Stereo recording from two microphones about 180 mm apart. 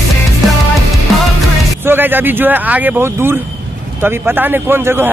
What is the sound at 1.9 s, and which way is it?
Speech, 10° right (ahead or behind).